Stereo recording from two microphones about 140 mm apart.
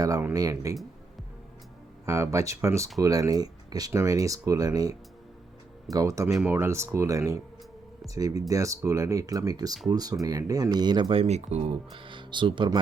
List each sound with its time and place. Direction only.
0.0 s speech: 20° right (ahead or behind)
2.0 s speech: 20° right (ahead or behind)